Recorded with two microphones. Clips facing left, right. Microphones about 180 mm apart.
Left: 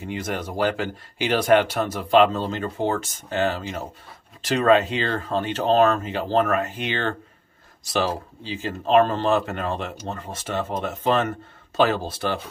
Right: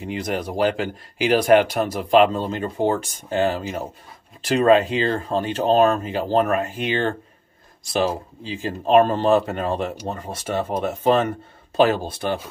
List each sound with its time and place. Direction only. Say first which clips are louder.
0.0 s speech: right 3 dB; 15° right (ahead or behind)
4.6 s speech: right 2 dB; 30° right (ahead or behind)
5.1 s speech: right 2 dB; 10° right (ahead or behind)
6.4 s speech: right 1 dB; 25° right (ahead or behind)
6.9 s speech: right 6 dB; 15° right (ahead or behind)
8.8 s speech: right 2 dB; 15° right (ahead or behind)